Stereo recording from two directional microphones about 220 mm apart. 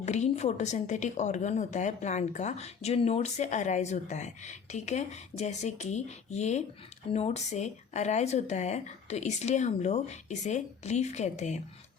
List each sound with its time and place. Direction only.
0.0 s a woman's voice: 30° left (ahead or behind)